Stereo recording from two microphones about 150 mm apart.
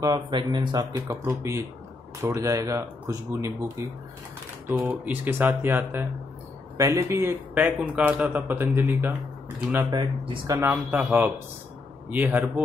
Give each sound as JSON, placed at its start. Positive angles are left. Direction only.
{"t": 0.0, "sound": "speech", "side_deg": -30}
{"t": 0.9, "sound": "a man's voice", "side_deg": -20}
{"t": 9.8, "sound": "speech", "side_deg": -35}
{"t": 10.4, "sound": "speech", "side_deg": -25}
{"t": 10.7, "sound": "a man's voice", "side_deg": -10}